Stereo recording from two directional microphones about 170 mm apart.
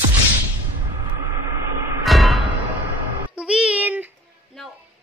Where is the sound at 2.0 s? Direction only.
Centre (ahead or behind).